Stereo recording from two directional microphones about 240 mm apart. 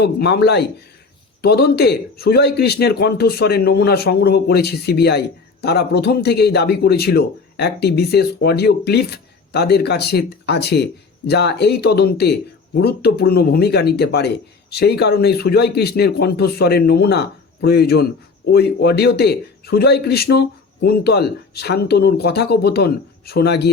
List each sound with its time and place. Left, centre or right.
0.0 s a man's voice: left